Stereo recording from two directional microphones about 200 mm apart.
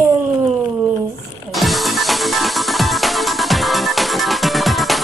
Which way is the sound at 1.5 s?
Centre (ahead or behind).